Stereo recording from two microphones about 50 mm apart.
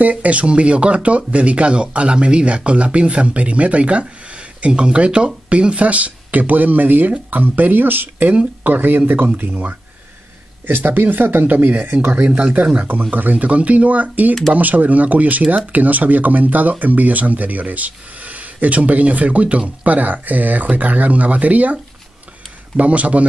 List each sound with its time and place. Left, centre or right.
0.0 s speech: right
10.7 s speech: right
12.3 s speech: right
22.8 s speech: right